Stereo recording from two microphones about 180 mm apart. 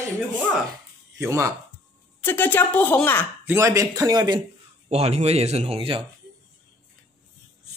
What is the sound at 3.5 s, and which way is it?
Speech, 15° right (ahead or behind).